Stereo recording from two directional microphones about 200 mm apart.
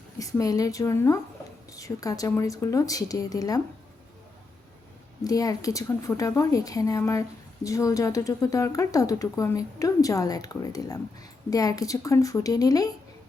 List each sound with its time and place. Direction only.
0.2 s a woman's voice: 15° left (ahead or behind)
5.2 s a woman's voice: 15° left (ahead or behind)